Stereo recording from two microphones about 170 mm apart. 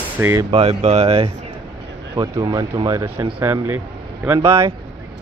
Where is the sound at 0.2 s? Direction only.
15° right (ahead or behind).